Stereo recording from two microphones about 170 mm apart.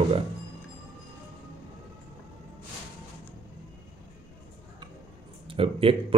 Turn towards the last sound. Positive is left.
turn(degrees=-35)  # may be behind; listen again after turning